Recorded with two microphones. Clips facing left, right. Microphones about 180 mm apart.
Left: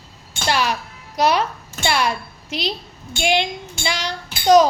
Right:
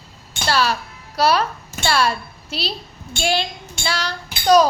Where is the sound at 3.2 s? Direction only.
15° left (ahead or behind).